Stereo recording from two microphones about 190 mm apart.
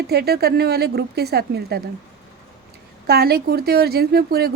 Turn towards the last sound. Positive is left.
turn(degrees=-55)  # may be behind; listen again after turning